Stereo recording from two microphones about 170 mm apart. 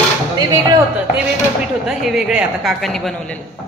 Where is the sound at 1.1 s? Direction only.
5° right (ahead or behind).